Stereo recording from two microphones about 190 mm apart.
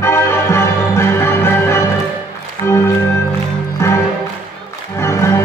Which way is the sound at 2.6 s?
15° left (ahead or behind).